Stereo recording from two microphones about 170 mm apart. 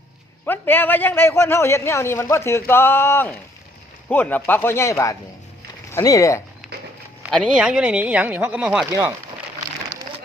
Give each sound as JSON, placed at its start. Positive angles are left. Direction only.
{"t": 0.4, "sound": "a man's voice", "side_deg": 10}
{"t": 7.3, "sound": "speech", "side_deg": 0}